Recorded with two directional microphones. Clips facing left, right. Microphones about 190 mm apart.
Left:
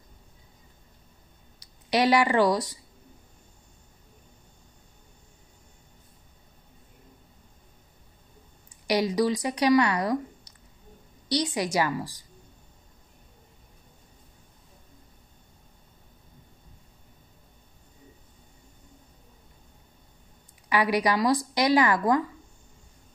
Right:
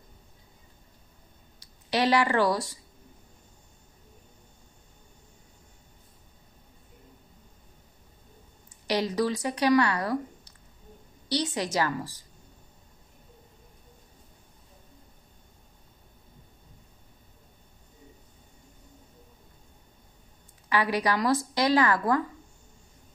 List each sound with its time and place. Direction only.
1.6 s speech: 15° left (ahead or behind)
8.8 s speech: 10° left (ahead or behind)
20.7 s speech: 15° left (ahead or behind)